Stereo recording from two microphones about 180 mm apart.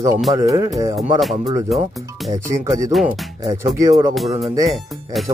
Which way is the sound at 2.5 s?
15° right (ahead or behind).